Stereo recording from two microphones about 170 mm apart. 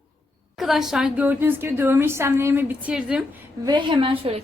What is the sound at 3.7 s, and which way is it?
Speech, 25° right (ahead or behind).